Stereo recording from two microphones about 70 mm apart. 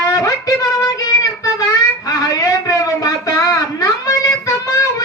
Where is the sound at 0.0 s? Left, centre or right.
Left.